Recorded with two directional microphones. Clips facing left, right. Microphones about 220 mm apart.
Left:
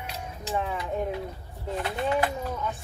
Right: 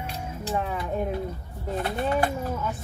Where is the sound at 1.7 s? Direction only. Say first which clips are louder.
Right 2 dB; 45° right (ahead or behind).